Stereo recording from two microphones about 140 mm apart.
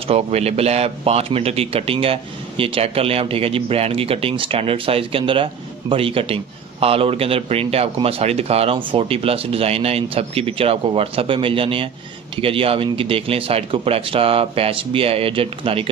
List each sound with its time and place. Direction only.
0.1 s speech: 50° right (ahead or behind)